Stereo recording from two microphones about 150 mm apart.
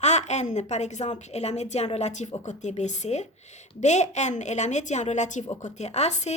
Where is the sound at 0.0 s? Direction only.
50° left (ahead or behind).